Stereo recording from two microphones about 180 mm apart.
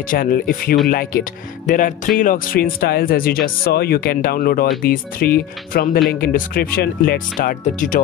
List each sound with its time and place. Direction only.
0.1 s speech: 50° left (ahead or behind)